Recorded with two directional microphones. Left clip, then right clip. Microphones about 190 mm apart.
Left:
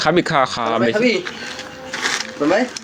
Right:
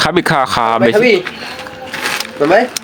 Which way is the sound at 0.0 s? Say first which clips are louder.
Right 3 dB; 35° right (ahead or behind).